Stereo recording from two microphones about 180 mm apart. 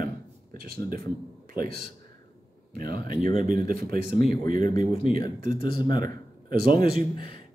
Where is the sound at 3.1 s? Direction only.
30° left (ahead or behind).